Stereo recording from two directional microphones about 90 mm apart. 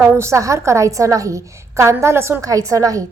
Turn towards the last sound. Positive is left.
turn(degrees=-40)  # may be behind; listen again after turning